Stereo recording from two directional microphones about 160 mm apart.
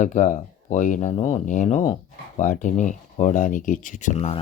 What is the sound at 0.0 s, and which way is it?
Speech, 50° left (ahead or behind).